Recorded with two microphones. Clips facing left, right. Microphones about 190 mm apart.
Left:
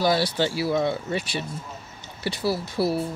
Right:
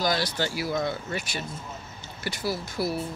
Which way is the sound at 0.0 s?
30° left (ahead or behind).